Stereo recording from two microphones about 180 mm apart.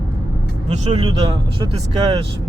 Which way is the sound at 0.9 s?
30° right (ahead or behind).